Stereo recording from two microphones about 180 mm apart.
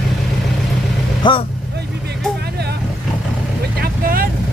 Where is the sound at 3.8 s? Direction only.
55° right (ahead or behind).